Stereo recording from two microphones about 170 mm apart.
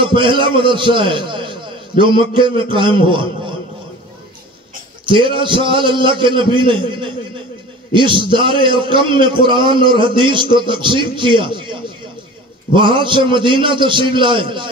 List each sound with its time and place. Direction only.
0.0 s a man's voice: 30° right (ahead or behind)
5.0 s a man's voice: 30° right (ahead or behind)